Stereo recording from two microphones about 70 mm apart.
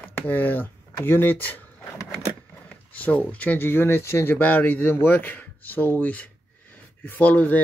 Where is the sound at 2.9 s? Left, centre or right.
Left.